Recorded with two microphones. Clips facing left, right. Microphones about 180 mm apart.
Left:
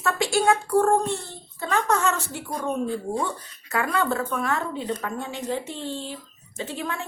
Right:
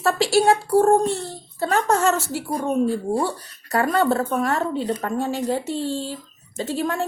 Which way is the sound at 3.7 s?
40° right (ahead or behind).